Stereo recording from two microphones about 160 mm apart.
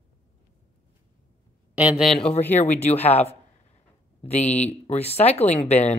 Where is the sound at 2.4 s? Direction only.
10° left (ahead or behind).